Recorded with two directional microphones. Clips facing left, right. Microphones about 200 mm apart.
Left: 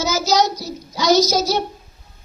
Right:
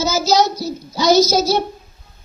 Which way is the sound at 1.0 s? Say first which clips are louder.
Right 2 dB; 15° left (ahead or behind).